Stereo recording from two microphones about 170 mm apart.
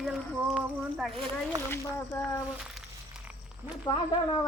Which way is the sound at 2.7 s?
5° right (ahead or behind).